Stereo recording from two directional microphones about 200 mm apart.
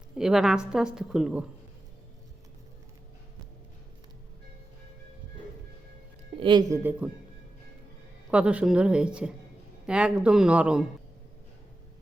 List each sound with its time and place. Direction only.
0.2 s a woman's voice: centre (ahead or behind)
6.3 s speech: 25° right (ahead or behind)
8.3 s a woman's voice: 5° right (ahead or behind)